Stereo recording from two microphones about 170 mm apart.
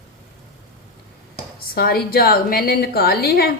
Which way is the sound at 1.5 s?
65° left (ahead or behind).